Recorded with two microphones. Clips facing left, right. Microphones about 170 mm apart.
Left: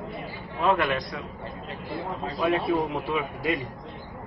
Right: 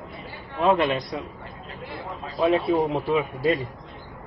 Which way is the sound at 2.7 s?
35° right (ahead or behind).